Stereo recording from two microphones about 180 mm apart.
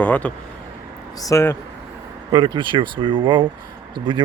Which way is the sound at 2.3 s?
25° right (ahead or behind).